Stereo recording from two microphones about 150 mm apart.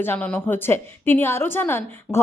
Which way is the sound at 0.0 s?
10° left (ahead or behind).